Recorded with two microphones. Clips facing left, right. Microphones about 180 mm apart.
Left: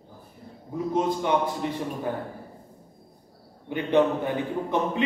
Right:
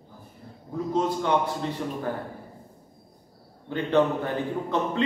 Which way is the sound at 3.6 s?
15° left (ahead or behind).